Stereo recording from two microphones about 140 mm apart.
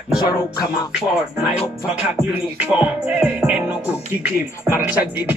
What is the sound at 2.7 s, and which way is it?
Music, 10° right (ahead or behind).